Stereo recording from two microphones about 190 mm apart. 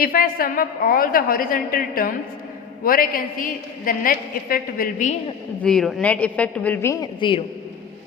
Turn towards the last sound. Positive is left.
turn(degrees=25)  # may be behind; listen again after turning